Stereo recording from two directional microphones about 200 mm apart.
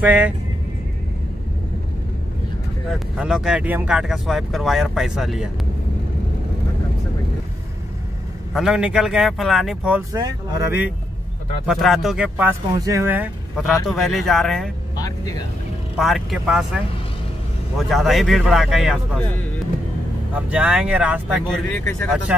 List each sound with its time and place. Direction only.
0.0 s speech: 5° right (ahead or behind)
2.9 s speech: 5° right (ahead or behind)
8.5 s speech: 5° right (ahead or behind)
10.1 s speech: 20° right (ahead or behind)
11.6 s speech: centre (ahead or behind)
12.7 s speech: 15° right (ahead or behind)
13.8 s speech: centre (ahead or behind)
15.0 s vehicle: 20° left (ahead or behind)
16.0 s speech: centre (ahead or behind)
20.3 s speech: 5° right (ahead or behind)
21.7 s speech: 10° left (ahead or behind)